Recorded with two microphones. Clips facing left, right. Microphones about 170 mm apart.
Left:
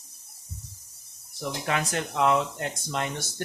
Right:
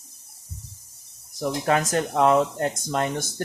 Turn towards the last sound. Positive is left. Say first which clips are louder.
# right 6 dB
turn(degrees=-45)  # may be behind; listen again after turning